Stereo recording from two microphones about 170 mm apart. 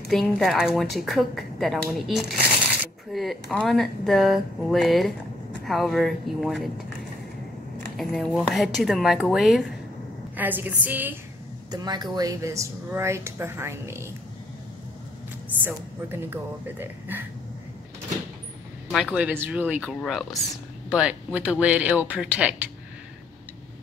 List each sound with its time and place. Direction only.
0.1 s speech: centre (ahead or behind)
8.0 s speech: centre (ahead or behind)
11.7 s speech: 25° right (ahead or behind)
15.6 s speech: 10° right (ahead or behind)
19.4 s speech: 10° right (ahead or behind)
19.8 s speech: centre (ahead or behind)